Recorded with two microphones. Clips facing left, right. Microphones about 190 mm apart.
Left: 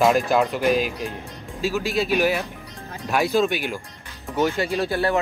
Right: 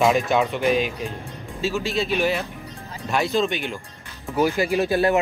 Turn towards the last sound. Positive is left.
turn(degrees=-15)  # may be behind; listen again after turning